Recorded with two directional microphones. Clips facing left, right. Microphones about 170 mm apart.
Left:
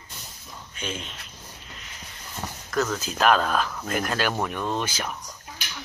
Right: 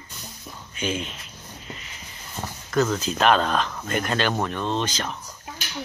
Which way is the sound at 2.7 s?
Centre (ahead or behind).